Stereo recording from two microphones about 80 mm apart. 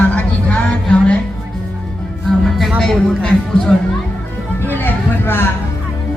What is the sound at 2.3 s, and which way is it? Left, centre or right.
Music, centre.